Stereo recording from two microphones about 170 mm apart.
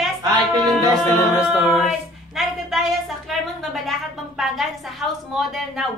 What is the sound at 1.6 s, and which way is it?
A woman's voice, centre (ahead or behind).